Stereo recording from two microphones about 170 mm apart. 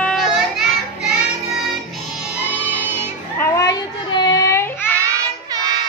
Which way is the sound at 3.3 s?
20° left (ahead or behind).